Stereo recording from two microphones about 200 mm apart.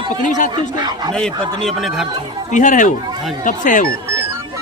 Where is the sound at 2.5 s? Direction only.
40° left (ahead or behind).